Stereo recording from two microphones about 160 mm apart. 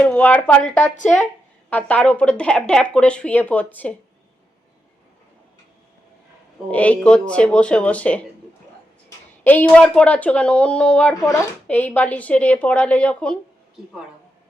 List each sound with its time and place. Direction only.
0.0 s speech: 10° left (ahead or behind)
6.7 s speech: 10° left (ahead or behind)